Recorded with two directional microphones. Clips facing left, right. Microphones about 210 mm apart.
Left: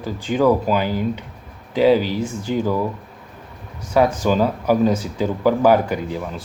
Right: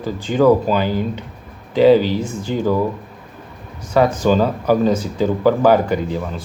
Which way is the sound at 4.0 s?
10° left (ahead or behind).